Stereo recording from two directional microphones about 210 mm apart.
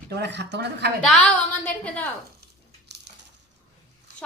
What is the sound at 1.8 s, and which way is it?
Speech, 5° left (ahead or behind).